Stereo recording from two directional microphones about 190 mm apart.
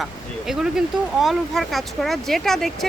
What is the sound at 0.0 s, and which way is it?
Speech, centre (ahead or behind).